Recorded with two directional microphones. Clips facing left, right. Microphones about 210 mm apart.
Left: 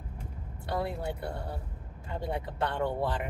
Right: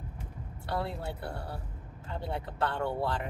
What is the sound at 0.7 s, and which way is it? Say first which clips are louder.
Speech: left 2 dB; 15° left (ahead or behind).